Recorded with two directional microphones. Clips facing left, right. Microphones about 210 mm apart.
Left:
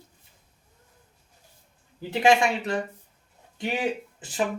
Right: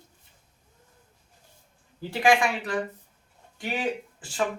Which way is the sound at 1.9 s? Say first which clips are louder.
Left 2 dB; 25° left (ahead or behind).